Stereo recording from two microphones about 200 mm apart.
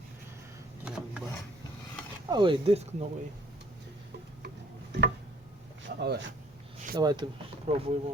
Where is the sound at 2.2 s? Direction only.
25° right (ahead or behind).